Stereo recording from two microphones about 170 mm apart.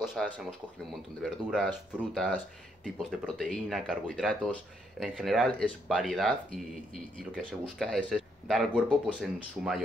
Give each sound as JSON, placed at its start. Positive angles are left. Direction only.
{"t": 0.1, "sound": "speech", "side_deg": 0}